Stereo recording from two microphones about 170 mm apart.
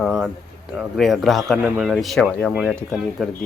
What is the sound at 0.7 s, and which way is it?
Speech, centre (ahead or behind).